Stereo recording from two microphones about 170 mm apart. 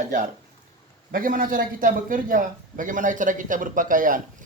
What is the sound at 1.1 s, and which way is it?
A man's voice, 55° right (ahead or behind).